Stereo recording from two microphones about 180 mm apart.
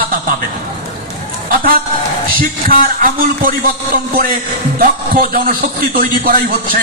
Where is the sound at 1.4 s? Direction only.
55° right (ahead or behind).